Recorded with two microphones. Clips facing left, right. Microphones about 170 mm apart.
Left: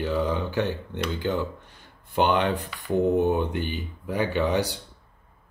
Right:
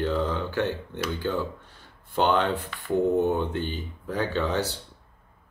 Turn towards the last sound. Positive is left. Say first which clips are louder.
# left 2 dB
turn(degrees=15)  # may be behind; listen again after turning